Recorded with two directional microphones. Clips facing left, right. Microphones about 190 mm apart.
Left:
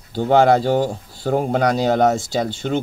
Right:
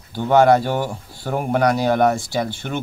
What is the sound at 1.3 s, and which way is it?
Speech, 20° left (ahead or behind).